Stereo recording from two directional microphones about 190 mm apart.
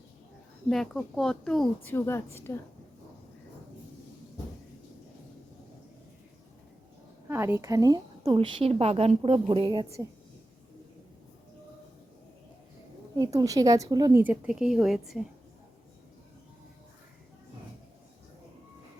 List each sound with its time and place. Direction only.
0.7 s speech: centre (ahead or behind)
7.3 s a woman's voice: 15° right (ahead or behind)
13.1 s a woman's voice: 20° right (ahead or behind); by 15.2 s centre (ahead or behind)